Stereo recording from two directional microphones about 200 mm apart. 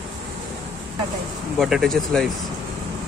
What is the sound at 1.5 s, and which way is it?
Speech, centre (ahead or behind).